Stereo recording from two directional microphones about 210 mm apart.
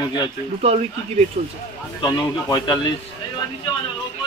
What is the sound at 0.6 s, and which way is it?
Speech, 30° right (ahead or behind).